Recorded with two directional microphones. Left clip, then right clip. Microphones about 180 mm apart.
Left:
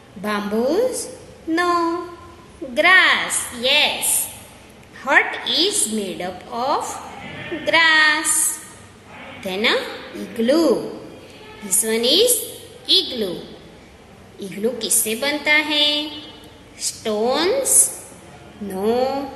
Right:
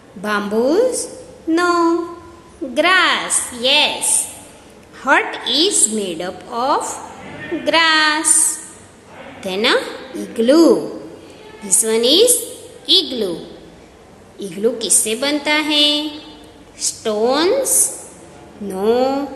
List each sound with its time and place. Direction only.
0.2 s a woman's voice: 25° right (ahead or behind)
5.0 s a woman's voice: 25° right (ahead or behind)
9.4 s a woman's voice: 25° right (ahead or behind)
14.4 s a woman's voice: 25° right (ahead or behind)